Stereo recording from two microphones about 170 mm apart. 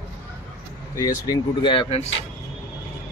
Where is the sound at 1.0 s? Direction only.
25° left (ahead or behind).